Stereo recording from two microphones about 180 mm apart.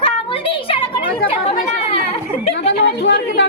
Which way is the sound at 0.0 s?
30° left (ahead or behind).